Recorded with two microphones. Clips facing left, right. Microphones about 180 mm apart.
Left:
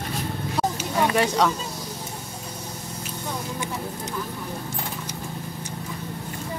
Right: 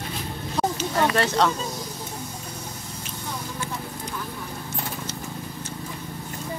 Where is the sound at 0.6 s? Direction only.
10° left (ahead or behind).